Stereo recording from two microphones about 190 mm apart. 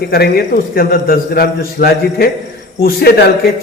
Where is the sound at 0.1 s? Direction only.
55° left (ahead or behind).